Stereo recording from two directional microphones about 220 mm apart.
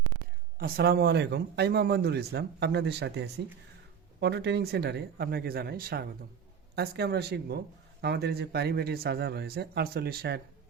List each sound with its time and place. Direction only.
0.6 s speech: 45° right (ahead or behind)